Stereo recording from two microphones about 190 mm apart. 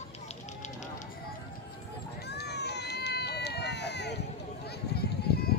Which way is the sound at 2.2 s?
60° left (ahead or behind).